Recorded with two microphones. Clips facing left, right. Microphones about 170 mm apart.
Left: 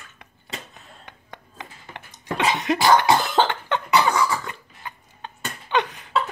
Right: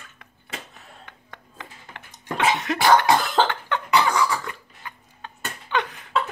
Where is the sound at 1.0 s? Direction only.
20° left (ahead or behind).